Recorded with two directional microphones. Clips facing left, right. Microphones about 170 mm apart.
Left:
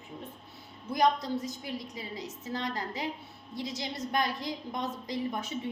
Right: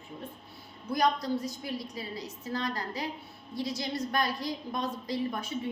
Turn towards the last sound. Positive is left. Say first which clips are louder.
# right 1 dB
turn(degrees=20)  # may be behind; listen again after turning